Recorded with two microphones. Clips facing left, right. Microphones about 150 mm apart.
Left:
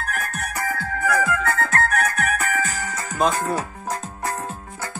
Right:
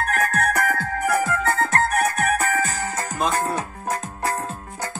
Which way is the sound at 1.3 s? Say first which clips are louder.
Right 1 dB; 30° right (ahead or behind).